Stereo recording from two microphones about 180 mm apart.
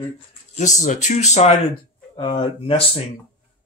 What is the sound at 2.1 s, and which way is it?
Speech, 25° left (ahead or behind).